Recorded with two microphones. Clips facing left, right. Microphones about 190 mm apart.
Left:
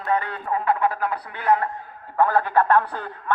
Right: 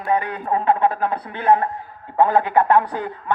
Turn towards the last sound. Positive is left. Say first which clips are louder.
# right 3 dB
turn(degrees=-15)  # may be behind; listen again after turning